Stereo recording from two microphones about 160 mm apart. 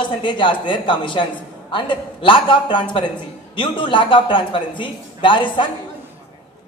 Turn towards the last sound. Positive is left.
turn(degrees=30)  # may be behind; listen again after turning